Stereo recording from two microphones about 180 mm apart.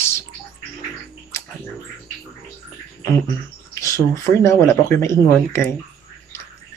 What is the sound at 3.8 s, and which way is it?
Speech, 15° left (ahead or behind).